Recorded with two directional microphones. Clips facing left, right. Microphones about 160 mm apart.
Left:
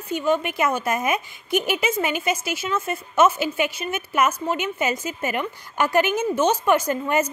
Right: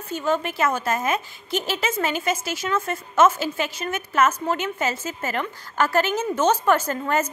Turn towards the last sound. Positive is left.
turn(degrees=10)  # may be behind; listen again after turning